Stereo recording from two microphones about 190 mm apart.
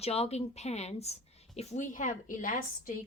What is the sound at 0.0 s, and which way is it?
A woman's voice, 35° left (ahead or behind).